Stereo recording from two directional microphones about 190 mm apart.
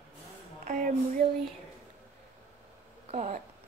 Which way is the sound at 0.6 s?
40° right (ahead or behind).